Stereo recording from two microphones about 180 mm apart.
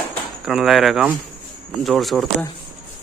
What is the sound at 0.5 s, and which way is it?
Speech, centre (ahead or behind).